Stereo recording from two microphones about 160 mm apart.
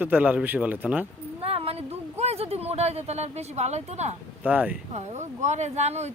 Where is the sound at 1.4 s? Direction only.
35° right (ahead or behind).